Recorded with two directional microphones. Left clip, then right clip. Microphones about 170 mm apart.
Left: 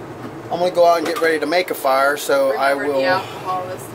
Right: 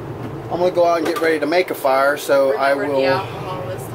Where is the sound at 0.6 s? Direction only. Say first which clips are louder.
Left 1 dB; 15° left (ahead or behind).